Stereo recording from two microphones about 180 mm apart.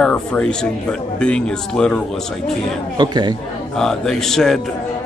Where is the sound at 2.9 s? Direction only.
25° right (ahead or behind).